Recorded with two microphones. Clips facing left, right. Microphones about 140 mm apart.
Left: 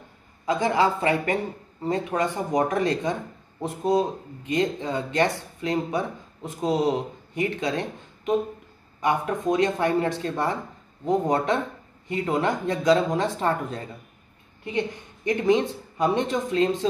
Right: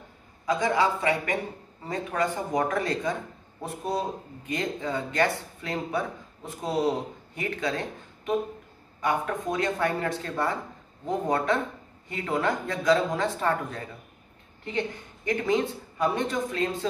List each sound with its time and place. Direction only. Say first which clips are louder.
0.5 s a man's voice: left 2 dB; 30° left (ahead or behind)
1.9 s speech: left 3 dB; 20° left (ahead or behind)
9.0 s speech: left 3 dB; 20° left (ahead or behind)